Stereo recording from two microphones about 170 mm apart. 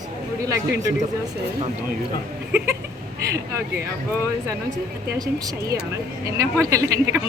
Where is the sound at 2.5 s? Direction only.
10° right (ahead or behind).